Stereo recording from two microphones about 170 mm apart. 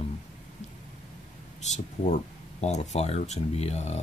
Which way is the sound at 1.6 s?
40° left (ahead or behind).